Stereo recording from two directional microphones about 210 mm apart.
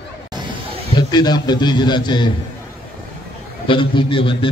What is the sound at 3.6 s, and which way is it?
Speech, 25° left (ahead or behind).